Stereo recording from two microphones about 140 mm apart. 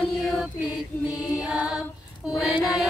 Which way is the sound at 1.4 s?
5° right (ahead or behind).